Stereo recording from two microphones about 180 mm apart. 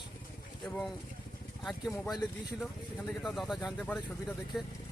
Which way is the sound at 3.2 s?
Centre (ahead or behind).